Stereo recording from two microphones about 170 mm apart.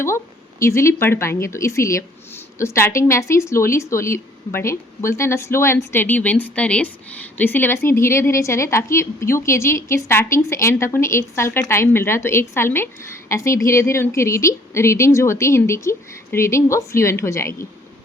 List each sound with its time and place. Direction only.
0.6 s speech: 15° left (ahead or behind)